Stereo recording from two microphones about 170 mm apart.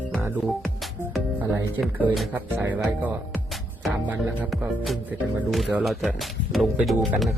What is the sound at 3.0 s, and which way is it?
Music, 5° right (ahead or behind).